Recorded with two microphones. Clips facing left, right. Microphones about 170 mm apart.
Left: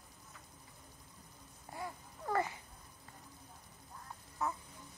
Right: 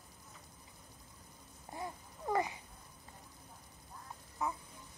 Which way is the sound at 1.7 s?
20° right (ahead or behind).